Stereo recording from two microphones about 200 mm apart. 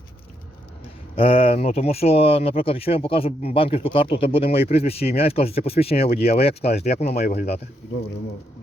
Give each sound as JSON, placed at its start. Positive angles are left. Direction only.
{"t": 1.1, "sound": "speech", "side_deg": 30}